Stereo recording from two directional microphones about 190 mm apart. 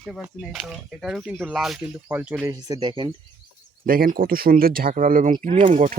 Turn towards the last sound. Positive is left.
turn(degrees=-40)  # may be behind; listen again after turning